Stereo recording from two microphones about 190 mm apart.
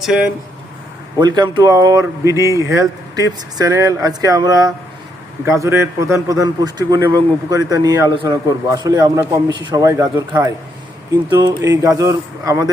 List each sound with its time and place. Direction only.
0.0 s speech: 5° right (ahead or behind)
1.2 s a man's voice: 20° right (ahead or behind)